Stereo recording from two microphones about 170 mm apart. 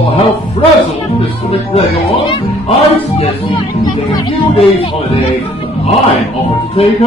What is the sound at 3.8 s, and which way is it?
Speech, 25° left (ahead or behind).